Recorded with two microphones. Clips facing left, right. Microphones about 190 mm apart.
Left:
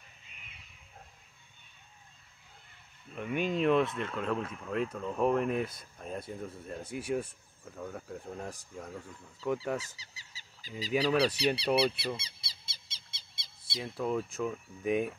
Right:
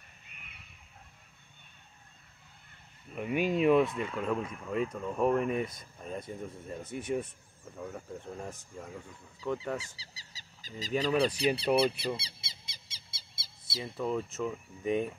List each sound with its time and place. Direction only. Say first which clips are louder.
3.1 s speech: right 2 dB; 5° right (ahead or behind)
7.6 s speech: even; 5° right (ahead or behind)
8.1 s speech: even; 5° left (ahead or behind)
9.8 s a sound: left 1 dB; 35° right (ahead or behind)
10.9 s speech: even; centre (ahead or behind)
11.3 s speech: right 1 dB; 50° right (ahead or behind)
12.2 s squeak: right 2 dB; 25° right (ahead or behind); by 14.5 s centre (ahead or behind)
14.8 s speech: even; 5° left (ahead or behind)